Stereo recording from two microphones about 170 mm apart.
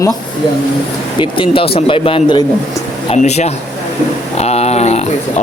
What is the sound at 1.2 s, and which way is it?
Speech, 30° left (ahead or behind).